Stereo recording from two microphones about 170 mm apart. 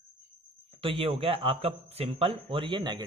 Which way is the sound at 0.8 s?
35° right (ahead or behind).